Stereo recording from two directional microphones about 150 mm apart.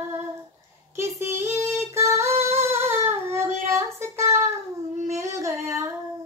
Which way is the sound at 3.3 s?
20° right (ahead or behind).